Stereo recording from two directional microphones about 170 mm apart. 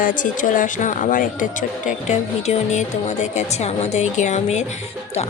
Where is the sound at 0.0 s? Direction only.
50° left (ahead or behind).